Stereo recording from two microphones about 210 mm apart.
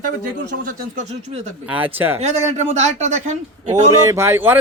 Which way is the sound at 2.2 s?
35° right (ahead or behind).